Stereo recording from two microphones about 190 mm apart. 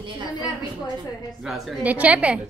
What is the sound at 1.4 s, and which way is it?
Speech, centre (ahead or behind).